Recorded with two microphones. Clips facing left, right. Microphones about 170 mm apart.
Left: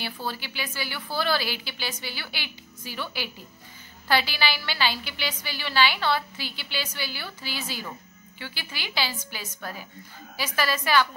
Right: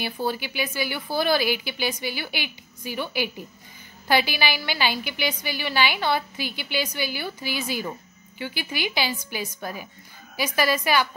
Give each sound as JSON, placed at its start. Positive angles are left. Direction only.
{"t": 0.0, "sound": "a woman's voice", "side_deg": -15}